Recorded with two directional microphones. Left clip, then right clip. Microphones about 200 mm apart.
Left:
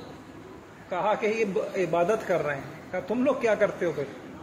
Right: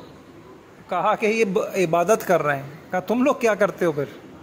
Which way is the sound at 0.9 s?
60° right (ahead or behind).